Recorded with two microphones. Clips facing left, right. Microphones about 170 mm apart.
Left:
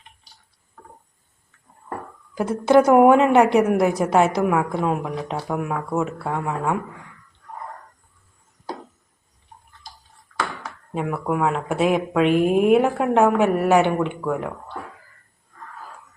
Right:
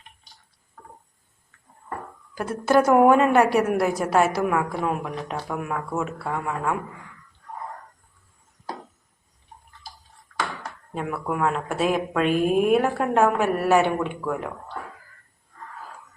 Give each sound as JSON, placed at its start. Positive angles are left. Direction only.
{"t": 2.3, "sound": "a woman's voice", "side_deg": 20}
{"t": 10.6, "sound": "speech", "side_deg": 10}